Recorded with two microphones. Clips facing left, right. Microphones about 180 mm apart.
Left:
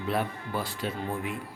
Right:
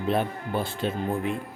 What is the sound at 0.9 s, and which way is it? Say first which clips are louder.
Speech: right 5 dB; 50° right (ahead or behind).